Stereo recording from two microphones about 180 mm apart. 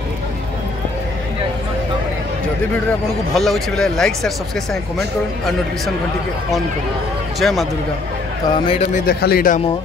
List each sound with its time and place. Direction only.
3.3 s speech: centre (ahead or behind)
7.3 s speech: centre (ahead or behind)
8.6 s a man's voice: 35° left (ahead or behind)
9.0 s speech: 60° left (ahead or behind)